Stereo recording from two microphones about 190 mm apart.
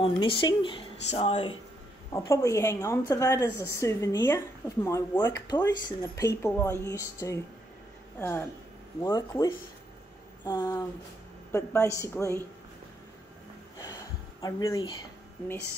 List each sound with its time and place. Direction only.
0.0 s speech: 25° left (ahead or behind)
2.1 s a woman's voice: 15° left (ahead or behind)
14.4 s speech: 20° left (ahead or behind)